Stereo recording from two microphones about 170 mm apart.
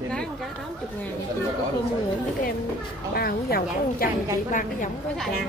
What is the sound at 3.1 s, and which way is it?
Speech, 65° left (ahead or behind).